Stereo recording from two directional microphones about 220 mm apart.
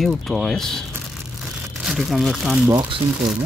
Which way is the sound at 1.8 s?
Centre (ahead or behind).